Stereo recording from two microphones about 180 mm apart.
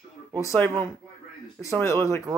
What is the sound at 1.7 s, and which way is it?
Speech, 15° left (ahead or behind).